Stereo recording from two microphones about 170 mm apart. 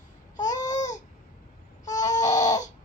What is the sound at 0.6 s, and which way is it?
Babbling, 45° left (ahead or behind).